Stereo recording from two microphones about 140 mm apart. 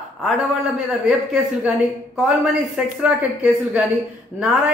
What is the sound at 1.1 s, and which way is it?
Speech, 5° right (ahead or behind).